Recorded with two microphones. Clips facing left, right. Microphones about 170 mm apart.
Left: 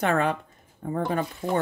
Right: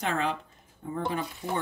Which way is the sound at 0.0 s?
55° left (ahead or behind).